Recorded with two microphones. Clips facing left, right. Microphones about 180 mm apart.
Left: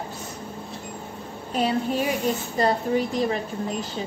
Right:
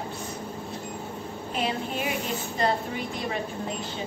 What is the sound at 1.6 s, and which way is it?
A woman's voice, 40° left (ahead or behind).